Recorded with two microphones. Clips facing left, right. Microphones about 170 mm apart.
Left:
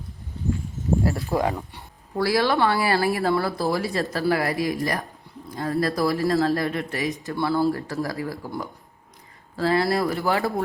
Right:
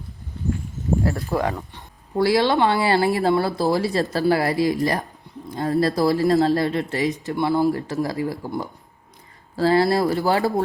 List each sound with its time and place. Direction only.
1.3 s speech: 15° left (ahead or behind)
2.1 s speech: 25° right (ahead or behind)